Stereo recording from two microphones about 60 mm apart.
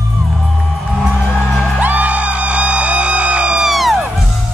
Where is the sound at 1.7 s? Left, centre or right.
Right.